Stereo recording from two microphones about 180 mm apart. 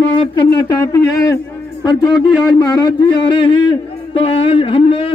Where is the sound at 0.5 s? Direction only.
20° left (ahead or behind).